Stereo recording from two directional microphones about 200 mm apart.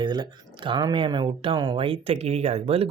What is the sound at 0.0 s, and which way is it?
Speech, 20° right (ahead or behind).